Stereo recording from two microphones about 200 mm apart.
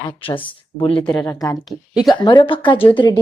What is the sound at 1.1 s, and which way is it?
Speech, 5° left (ahead or behind).